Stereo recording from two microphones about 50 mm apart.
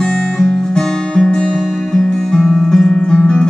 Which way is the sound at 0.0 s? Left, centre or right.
Centre.